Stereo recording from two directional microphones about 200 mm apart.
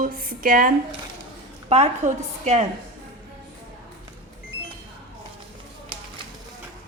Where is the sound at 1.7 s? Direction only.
35° right (ahead or behind).